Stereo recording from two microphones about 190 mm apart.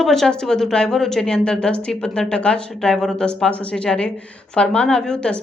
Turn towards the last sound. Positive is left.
turn(degrees=5)  # may be behind; listen again after turning